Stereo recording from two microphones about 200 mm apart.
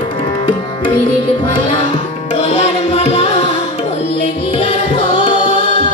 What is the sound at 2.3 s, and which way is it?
Music, 30° left (ahead or behind).